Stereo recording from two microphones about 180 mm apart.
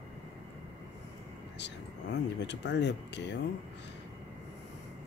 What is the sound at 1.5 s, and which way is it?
Speech, 75° left (ahead or behind).